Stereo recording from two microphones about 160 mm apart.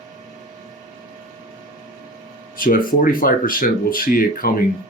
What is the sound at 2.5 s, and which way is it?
Speech, 60° left (ahead or behind).